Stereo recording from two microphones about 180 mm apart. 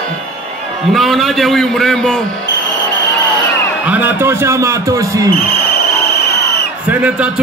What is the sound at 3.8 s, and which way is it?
Speech, 10° right (ahead or behind).